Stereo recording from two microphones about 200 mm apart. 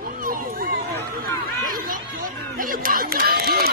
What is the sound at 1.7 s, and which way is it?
Chatter, 45° right (ahead or behind).